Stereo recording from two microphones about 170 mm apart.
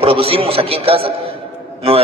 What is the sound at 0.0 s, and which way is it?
A man's voice, 35° right (ahead or behind).